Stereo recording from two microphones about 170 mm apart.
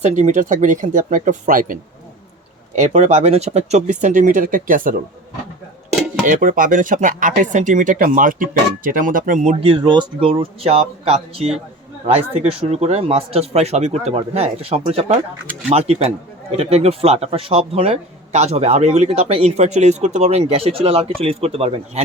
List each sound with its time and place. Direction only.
0.0 s speech: 45° right (ahead or behind)
6.2 s a man's voice: 50° right (ahead or behind); by 22.0 s 35° right (ahead or behind)